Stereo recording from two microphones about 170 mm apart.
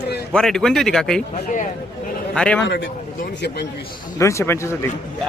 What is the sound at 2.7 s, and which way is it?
Speech, 70° left (ahead or behind).